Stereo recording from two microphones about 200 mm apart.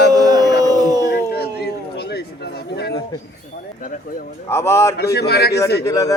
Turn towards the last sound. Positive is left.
turn(degrees=15)  # may be behind; listen again after turning